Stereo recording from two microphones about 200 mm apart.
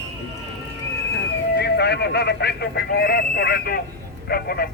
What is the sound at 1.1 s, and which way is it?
Speech, 55° left (ahead or behind).